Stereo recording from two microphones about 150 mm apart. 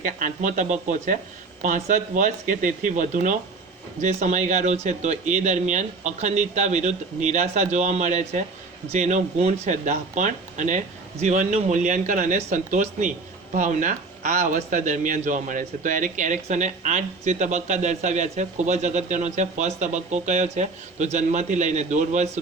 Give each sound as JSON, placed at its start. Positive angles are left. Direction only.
{"t": 0.0, "sound": "a man's voice", "side_deg": -65}